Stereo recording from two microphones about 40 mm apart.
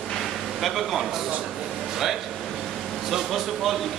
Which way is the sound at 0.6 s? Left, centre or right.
Centre.